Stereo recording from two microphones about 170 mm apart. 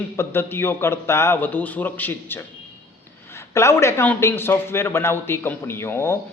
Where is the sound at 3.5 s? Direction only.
15° left (ahead or behind).